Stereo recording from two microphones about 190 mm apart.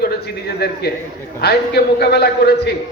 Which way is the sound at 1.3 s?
60° left (ahead or behind).